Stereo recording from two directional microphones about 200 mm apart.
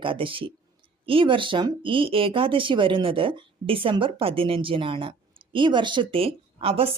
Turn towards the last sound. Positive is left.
turn(degrees=-30)  # may be behind; listen again after turning